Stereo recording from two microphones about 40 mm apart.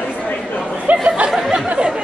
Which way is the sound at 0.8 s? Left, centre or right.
Right.